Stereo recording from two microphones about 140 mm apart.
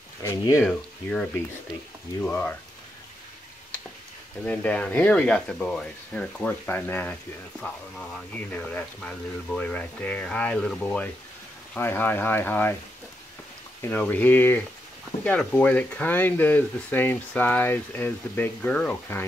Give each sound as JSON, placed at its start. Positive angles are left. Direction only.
{"t": 0.2, "sound": "speech", "side_deg": 20}
{"t": 0.7, "sound": "speech", "side_deg": 10}
{"t": 4.5, "sound": "speech", "side_deg": 10}
{"t": 13.7, "sound": "speech", "side_deg": 15}